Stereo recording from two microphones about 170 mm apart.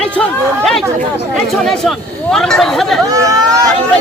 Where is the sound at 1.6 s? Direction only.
Centre (ahead or behind).